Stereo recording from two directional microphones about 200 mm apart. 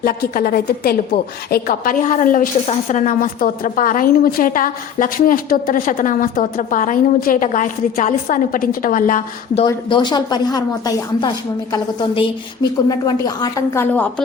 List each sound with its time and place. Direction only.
0.0 s a woman's voice: 45° left (ahead or behind)
9.6 s a woman's voice: 20° left (ahead or behind)